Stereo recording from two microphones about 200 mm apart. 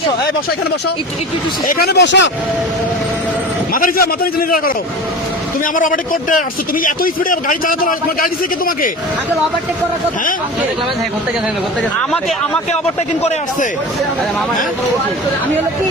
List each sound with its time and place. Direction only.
1.6 s speech: 50° left (ahead or behind)
3.7 s a man's voice: 45° left (ahead or behind)
5.7 s a man's voice: 40° left (ahead or behind)